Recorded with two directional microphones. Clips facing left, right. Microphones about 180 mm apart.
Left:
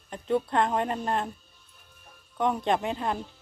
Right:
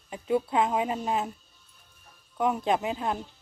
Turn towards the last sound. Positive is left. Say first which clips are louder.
# even
turn(degrees=0)  # may be behind; listen again after turning